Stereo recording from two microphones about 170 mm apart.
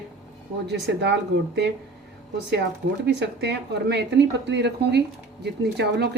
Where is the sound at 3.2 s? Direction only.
90° right.